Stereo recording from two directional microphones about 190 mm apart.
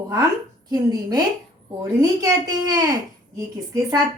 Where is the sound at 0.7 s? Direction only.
20° right (ahead or behind).